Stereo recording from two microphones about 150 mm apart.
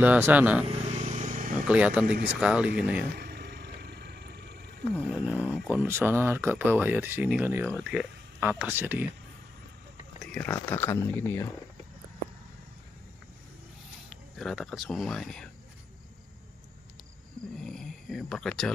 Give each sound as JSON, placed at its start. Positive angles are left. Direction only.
{"t": 0.0, "sound": "speech", "side_deg": -10}
{"t": 0.7, "sound": "vehicle", "side_deg": -50}
{"t": 1.7, "sound": "speech", "side_deg": -10}
{"t": 3.2, "sound": "vehicle", "side_deg": -90}
{"t": 4.9, "sound": "speech", "side_deg": -10}
{"t": 10.6, "sound": "speech", "side_deg": 15}
{"t": 14.0, "sound": "speech", "side_deg": 0}
{"t": 17.6, "sound": "a sound", "side_deg": 5}